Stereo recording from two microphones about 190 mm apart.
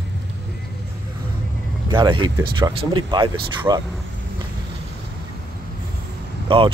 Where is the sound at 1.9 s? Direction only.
25° right (ahead or behind).